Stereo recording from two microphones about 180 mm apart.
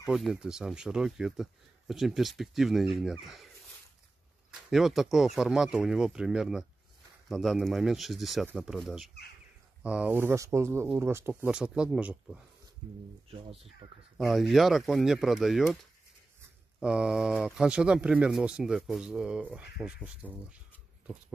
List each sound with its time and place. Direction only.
0.0 s speech: 5° right (ahead or behind)
4.5 s speech: centre (ahead or behind)
13.8 s speech: 35° right (ahead or behind)
14.1 s speech: centre (ahead or behind)
16.8 s speech: 5° right (ahead or behind)